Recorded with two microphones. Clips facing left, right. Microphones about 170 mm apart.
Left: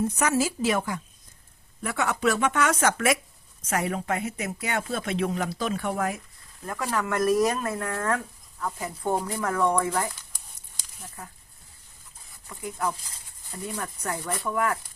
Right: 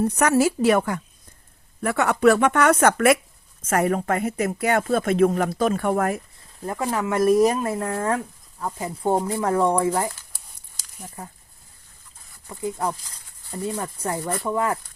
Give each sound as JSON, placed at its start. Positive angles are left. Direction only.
{"t": 0.0, "sound": "speech", "side_deg": -60}
{"t": 6.6, "sound": "speech", "side_deg": -30}
{"t": 12.5, "sound": "speech", "side_deg": -30}